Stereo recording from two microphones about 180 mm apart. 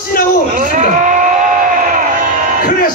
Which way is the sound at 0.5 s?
45° right (ahead or behind).